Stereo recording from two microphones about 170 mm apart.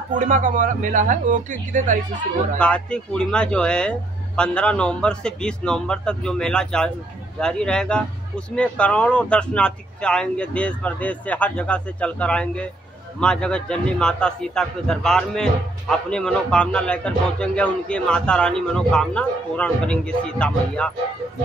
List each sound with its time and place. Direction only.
0.1 s speech: 50° right (ahead or behind)
2.6 s speech: 5° left (ahead or behind)